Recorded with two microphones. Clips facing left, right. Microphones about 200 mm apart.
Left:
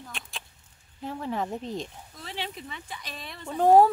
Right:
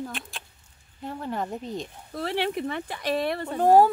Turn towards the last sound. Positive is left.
turn(degrees=0)  # may be behind; listen again after turning